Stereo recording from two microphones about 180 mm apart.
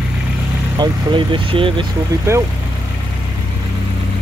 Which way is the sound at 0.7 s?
25° right (ahead or behind).